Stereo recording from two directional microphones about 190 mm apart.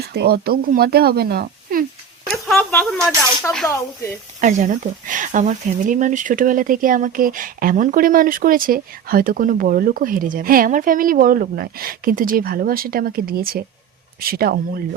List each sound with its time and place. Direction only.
0.1 s speech: 55° right (ahead or behind)
2.3 s a sound: 5° left (ahead or behind)
3.4 s speech: 5° left (ahead or behind)
4.4 s speech: 40° right (ahead or behind)